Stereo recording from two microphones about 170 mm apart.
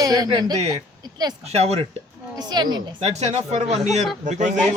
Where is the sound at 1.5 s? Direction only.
40° right (ahead or behind).